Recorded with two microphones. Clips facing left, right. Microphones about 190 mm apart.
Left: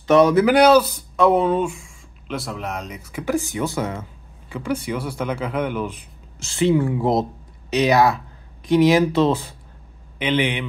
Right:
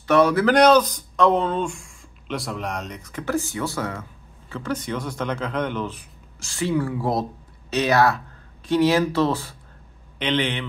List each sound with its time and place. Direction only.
0.0 s speech: 20° left (ahead or behind)
0.5 s speech: 5° left (ahead or behind)
5.9 s speech: 20° left (ahead or behind)
10.1 s speech: 5° left (ahead or behind)